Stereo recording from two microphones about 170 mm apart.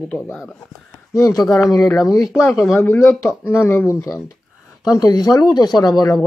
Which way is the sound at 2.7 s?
15° left (ahead or behind).